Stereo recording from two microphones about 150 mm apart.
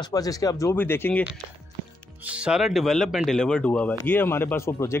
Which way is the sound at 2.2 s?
10° right (ahead or behind).